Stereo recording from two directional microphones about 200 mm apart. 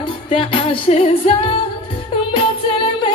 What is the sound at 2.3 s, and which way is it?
Music, 25° left (ahead or behind).